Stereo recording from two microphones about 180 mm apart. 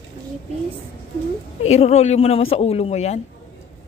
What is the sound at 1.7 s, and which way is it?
Speech, 35° left (ahead or behind).